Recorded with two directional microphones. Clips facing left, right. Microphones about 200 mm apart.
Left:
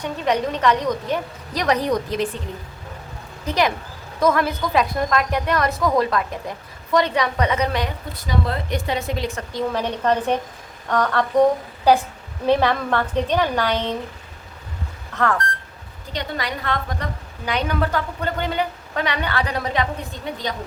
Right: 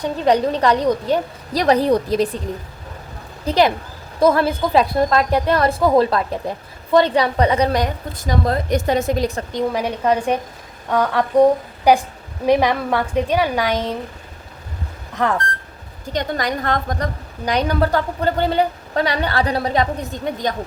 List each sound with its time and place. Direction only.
0.0 s a woman's voice: 35° right (ahead or behind)
3.4 s a woman's voice: 30° right (ahead or behind)
9.5 s a woman's voice: 15° right (ahead or behind)
15.1 s speech: 20° right (ahead or behind)
16.1 s a woman's voice: 45° right (ahead or behind)
20.3 s a woman's voice: 45° right (ahead or behind)